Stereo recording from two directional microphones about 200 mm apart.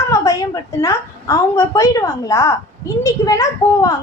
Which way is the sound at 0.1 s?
15° left (ahead or behind).